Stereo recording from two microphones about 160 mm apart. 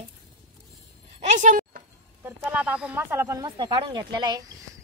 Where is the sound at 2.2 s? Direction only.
10° right (ahead or behind).